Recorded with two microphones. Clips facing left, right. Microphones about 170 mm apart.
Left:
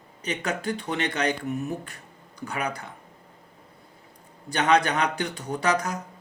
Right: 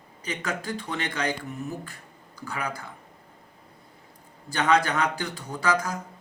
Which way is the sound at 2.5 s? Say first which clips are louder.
Left 2 dB; 20° left (ahead or behind).